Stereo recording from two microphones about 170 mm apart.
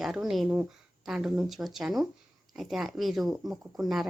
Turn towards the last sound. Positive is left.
turn(degrees=0)  # may be behind; listen again after turning